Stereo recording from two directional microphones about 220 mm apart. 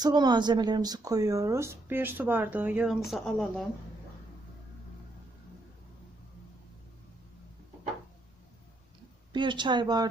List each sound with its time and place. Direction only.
0.0 s speech: 20° right (ahead or behind); by 3.5 s centre (ahead or behind)
9.3 s speech: 20° right (ahead or behind)